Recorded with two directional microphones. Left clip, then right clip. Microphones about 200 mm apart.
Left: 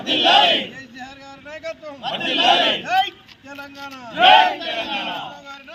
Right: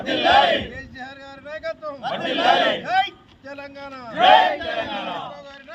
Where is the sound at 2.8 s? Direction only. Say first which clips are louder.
Left 1 dB; 20° right (ahead or behind).